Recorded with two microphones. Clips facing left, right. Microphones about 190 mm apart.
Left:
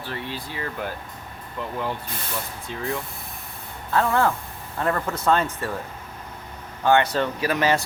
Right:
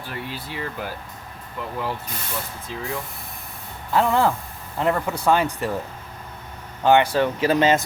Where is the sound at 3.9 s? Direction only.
15° right (ahead or behind).